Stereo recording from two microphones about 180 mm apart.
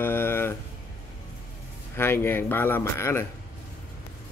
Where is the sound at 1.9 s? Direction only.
15° left (ahead or behind).